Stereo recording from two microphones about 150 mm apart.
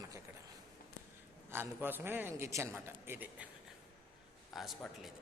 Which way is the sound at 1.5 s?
15° right (ahead or behind).